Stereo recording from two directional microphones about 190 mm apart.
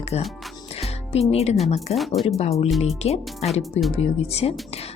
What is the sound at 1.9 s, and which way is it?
Speech, 35° left (ahead or behind).